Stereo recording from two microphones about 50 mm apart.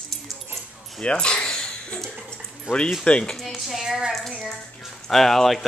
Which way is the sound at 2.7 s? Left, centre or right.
Centre.